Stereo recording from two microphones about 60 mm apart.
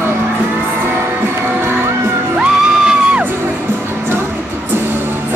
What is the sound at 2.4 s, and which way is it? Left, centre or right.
Music, centre.